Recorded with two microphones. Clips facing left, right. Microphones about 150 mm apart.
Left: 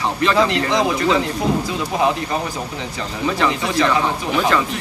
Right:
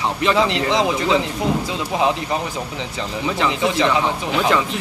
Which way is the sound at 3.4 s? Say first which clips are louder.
Right 1 dB; 20° right (ahead or behind).